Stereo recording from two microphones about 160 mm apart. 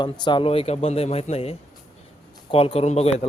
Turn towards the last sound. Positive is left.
turn(degrees=45)  # may be behind; listen again after turning